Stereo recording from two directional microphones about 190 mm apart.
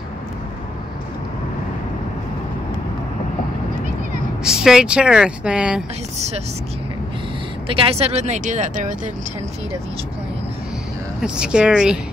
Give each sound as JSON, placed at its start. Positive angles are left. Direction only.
{"t": 4.5, "sound": "speech", "side_deg": -5}
{"t": 6.1, "sound": "speech", "side_deg": -35}
{"t": 7.6, "sound": "speech", "side_deg": -30}
{"t": 11.1, "sound": "speech", "side_deg": -5}